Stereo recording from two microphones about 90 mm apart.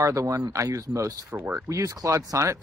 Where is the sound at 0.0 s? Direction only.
35° right (ahead or behind).